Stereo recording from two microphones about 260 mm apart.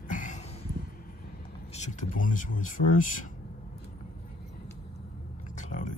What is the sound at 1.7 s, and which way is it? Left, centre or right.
Speech, left.